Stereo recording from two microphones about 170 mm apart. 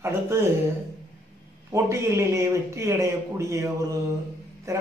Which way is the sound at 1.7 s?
15° right (ahead or behind).